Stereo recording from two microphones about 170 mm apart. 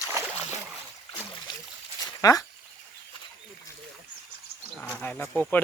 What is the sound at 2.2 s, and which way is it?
Speech, 20° left (ahead or behind).